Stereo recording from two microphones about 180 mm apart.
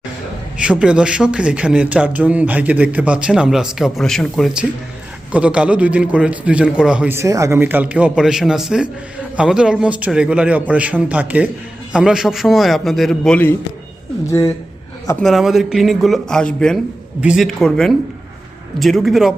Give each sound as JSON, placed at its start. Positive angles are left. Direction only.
{"t": 0.5, "sound": "a man's voice", "side_deg": -5}
{"t": 15.2, "sound": "a man's voice", "side_deg": 0}